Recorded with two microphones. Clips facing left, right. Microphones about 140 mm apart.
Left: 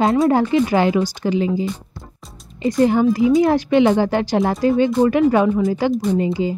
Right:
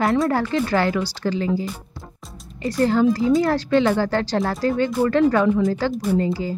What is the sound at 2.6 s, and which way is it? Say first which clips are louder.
Speech: left 3 dB; 15° left (ahead or behind).